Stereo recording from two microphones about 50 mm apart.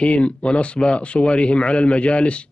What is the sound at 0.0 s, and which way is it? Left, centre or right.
Speech, left.